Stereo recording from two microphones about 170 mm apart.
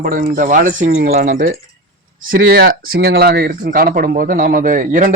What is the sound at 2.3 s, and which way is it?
Speech, 70° right (ahead or behind).